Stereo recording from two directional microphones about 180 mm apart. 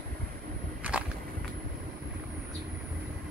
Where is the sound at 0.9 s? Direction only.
5° right (ahead or behind).